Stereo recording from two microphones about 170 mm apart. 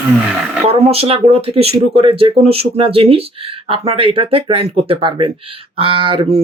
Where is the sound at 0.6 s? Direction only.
35° right (ahead or behind).